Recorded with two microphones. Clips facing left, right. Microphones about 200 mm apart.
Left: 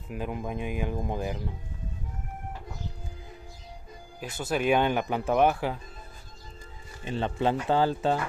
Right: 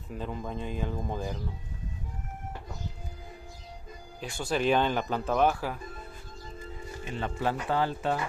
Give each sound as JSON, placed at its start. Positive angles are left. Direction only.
{"t": 0.1, "sound": "speech", "side_deg": 15}
{"t": 4.4, "sound": "speech", "side_deg": 5}
{"t": 7.1, "sound": "speech", "side_deg": 30}